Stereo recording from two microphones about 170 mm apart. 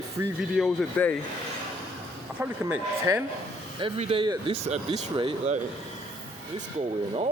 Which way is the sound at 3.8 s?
30° right (ahead or behind).